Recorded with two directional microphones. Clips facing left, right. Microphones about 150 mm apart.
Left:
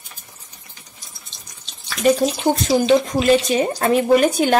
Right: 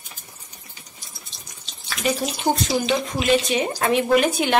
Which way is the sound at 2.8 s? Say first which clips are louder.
Left 7 dB; 40° left (ahead or behind).